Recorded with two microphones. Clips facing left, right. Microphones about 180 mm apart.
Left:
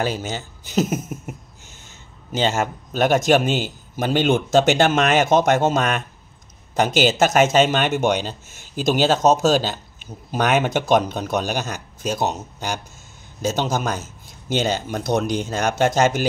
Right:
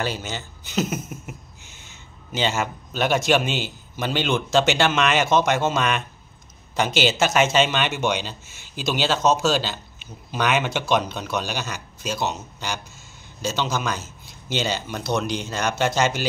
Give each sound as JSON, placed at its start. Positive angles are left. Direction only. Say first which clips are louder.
{"t": 0.0, "sound": "speech", "louder": "left 4 dB", "side_deg": 45}